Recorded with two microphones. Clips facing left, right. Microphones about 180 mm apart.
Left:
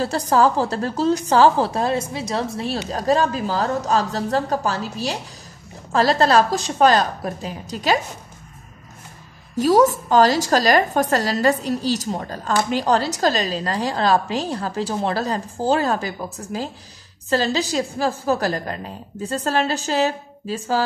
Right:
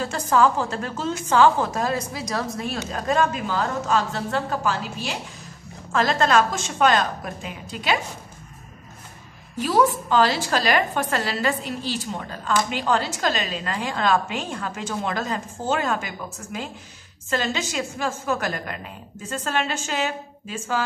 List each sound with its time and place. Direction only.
0.0 s a woman's voice: 35° left (ahead or behind)
9.6 s a woman's voice: 45° left (ahead or behind)